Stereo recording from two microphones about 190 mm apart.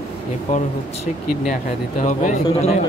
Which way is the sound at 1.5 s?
40° left (ahead or behind).